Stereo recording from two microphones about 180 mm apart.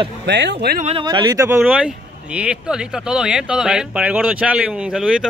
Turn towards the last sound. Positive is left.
turn(degrees=-5)  # may be behind; listen again after turning